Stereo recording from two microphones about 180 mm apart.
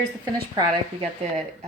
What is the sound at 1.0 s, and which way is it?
Speech, 35° right (ahead or behind).